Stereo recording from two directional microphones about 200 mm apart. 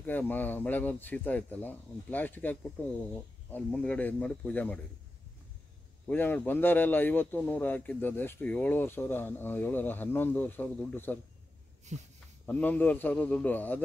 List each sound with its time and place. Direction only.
0.0 s a man's voice: 10° left (ahead or behind)
6.0 s a man's voice: 10° left (ahead or behind)
11.9 s speech: 35° right (ahead or behind)
12.4 s a man's voice: 10° left (ahead or behind)